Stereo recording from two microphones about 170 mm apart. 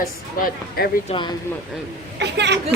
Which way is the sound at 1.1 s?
40° left (ahead or behind).